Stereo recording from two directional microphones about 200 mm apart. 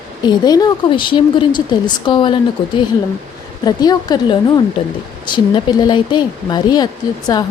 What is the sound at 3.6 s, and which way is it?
A woman's voice, 20° left (ahead or behind).